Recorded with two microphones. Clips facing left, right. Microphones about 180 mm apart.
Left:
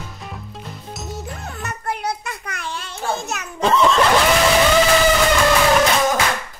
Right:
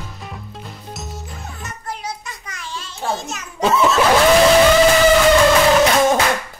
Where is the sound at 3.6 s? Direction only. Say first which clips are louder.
Even; 5° right (ahead or behind).